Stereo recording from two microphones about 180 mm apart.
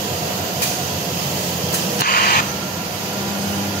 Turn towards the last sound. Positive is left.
turn(degrees=55)  # may be behind; listen again after turning